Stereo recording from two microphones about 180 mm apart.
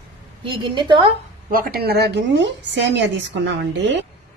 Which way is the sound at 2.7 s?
75° right (ahead or behind).